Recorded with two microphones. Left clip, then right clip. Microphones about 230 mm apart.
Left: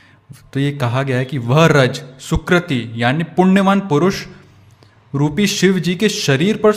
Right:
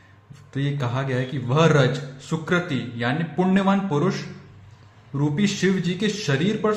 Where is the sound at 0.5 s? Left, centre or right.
Left.